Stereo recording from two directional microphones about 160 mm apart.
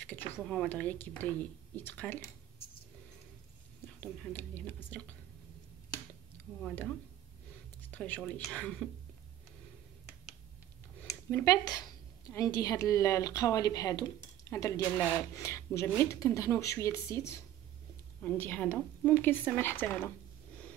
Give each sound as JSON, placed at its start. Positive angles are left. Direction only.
{"t": 0.1, "sound": "a woman's voice", "side_deg": 10}
{"t": 4.0, "sound": "a woman's voice", "side_deg": 10}
{"t": 7.9, "sound": "a sound", "side_deg": 10}
{"t": 8.2, "sound": "speech", "side_deg": 0}
{"t": 11.2, "sound": "a woman's voice", "side_deg": 15}